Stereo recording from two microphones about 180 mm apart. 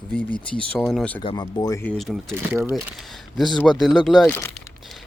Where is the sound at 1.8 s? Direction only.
5° left (ahead or behind).